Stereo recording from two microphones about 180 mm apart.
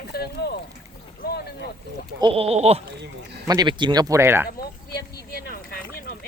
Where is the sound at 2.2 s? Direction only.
30° right (ahead or behind).